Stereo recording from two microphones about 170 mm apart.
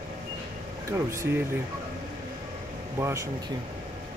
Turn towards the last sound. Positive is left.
turn(degrees=-15)  # may be behind; listen again after turning